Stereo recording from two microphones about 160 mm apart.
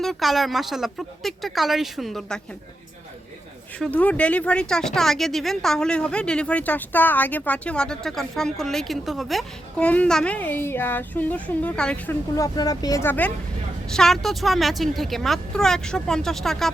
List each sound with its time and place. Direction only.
0.0 s speech: centre (ahead or behind)
3.8 s speech: 5° left (ahead or behind)
12.4 s speech: 25° left (ahead or behind); by 16.7 s centre (ahead or behind)